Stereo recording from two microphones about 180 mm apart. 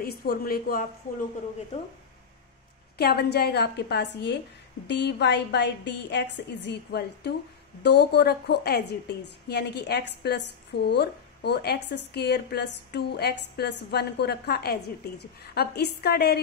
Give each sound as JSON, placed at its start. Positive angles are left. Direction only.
{"t": 0.0, "sound": "a woman's voice", "side_deg": 55}
{"t": 3.0, "sound": "a woman's voice", "side_deg": 60}